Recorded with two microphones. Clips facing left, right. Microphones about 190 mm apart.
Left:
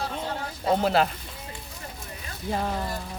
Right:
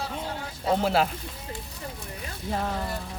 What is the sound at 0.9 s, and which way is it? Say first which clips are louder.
Speech: left 1 dB; centre (ahead or behind).